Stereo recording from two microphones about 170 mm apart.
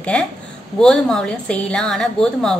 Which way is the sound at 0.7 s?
5° left (ahead or behind).